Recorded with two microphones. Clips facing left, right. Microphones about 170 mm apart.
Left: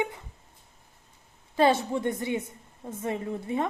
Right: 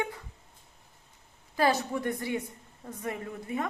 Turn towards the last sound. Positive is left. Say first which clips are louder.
# left 4 dB
turn(degrees=25)  # may be behind; listen again after turning